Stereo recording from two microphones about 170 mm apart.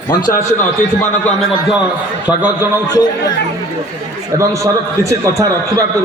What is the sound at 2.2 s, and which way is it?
Speech, 10° right (ahead or behind).